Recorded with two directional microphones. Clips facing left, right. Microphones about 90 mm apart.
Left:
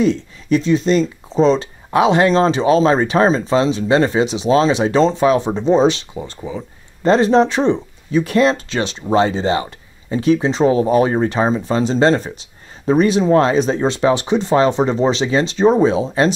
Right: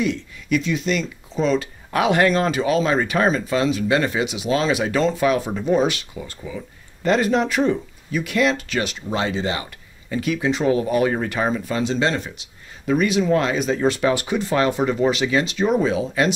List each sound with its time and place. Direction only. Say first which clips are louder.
0.0 s speech: left 7 dB; 30° left (ahead or behind)